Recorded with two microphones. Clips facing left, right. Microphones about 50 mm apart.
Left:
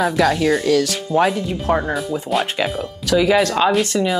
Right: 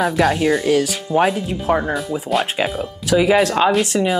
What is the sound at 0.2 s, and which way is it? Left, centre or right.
Speech, centre.